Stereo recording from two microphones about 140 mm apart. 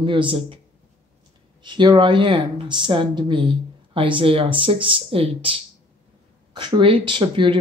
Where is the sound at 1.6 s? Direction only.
35° right (ahead or behind).